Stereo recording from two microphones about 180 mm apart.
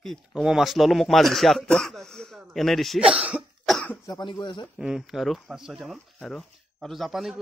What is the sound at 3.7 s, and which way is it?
Cough, 10° left (ahead or behind).